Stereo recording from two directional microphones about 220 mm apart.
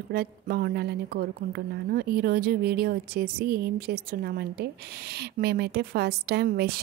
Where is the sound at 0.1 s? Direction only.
45° right (ahead or behind).